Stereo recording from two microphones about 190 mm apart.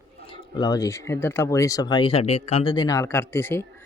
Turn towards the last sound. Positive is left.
turn(degrees=10)  # may be behind; listen again after turning